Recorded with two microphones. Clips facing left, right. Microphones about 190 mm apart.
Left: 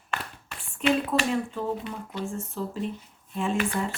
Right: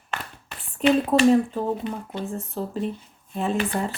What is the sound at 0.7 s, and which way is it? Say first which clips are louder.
Speech: right 5 dB; 35° right (ahead or behind).